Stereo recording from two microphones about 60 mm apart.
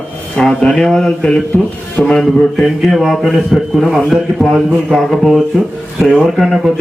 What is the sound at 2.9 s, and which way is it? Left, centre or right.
Speech, centre.